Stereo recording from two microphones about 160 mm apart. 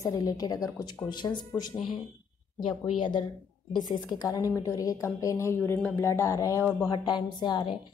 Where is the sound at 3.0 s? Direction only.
30° left (ahead or behind).